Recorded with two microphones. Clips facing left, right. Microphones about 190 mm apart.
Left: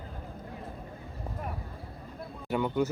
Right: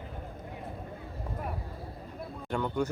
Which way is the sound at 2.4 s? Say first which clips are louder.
Left 3 dB; 5° left (ahead or behind).